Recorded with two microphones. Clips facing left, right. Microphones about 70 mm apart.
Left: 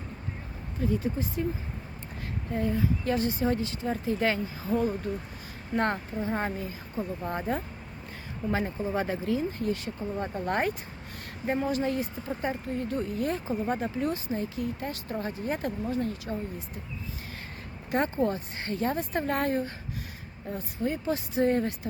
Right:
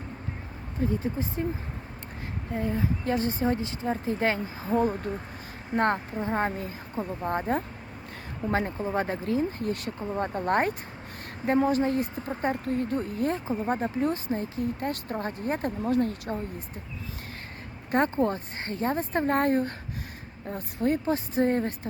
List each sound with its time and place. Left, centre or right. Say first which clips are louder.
0.8 s speech: right 1 dB; right
2.5 s speech: left 1 dB; right
11.9 s speech: right 3 dB; right
12.9 s speech: right 2 dB; right
14.8 s speech: right 3 dB; right
17.9 s speech: right 2 dB; right
21.1 s speech: right 1 dB; right